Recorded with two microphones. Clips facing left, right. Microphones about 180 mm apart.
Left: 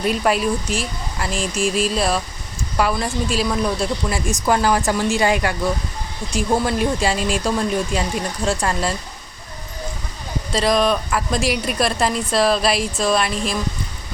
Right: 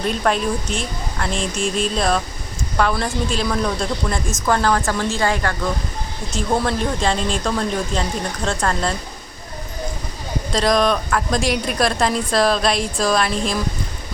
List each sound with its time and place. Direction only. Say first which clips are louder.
0.0 s a woman's voice: left 1 dB; 5° left (ahead or behind)
10.5 s a woman's voice: even; 5° left (ahead or behind)